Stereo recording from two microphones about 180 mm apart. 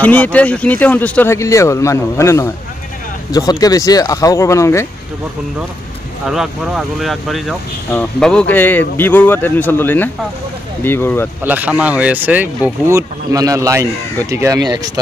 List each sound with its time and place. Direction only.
0.0 s speech: 5° left (ahead or behind)
6.2 s speech: centre (ahead or behind)
11.4 s speech: 10° right (ahead or behind)